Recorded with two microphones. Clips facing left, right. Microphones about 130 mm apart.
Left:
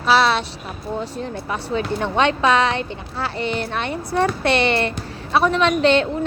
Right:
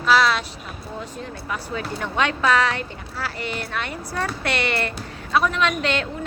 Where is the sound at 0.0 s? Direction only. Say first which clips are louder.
Left 2 dB; 30° left (ahead or behind).